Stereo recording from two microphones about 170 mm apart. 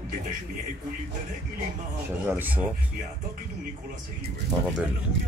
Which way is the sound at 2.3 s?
10° right (ahead or behind).